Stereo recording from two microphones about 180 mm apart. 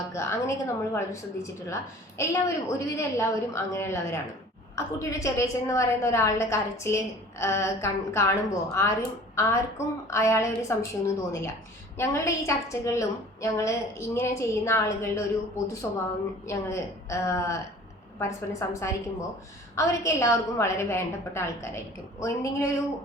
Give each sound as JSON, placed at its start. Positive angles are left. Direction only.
{"t": 0.1, "sound": "a woman's voice", "side_deg": 15}